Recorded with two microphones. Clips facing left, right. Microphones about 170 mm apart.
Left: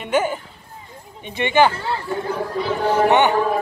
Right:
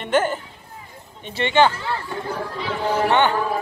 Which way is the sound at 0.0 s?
10° left (ahead or behind).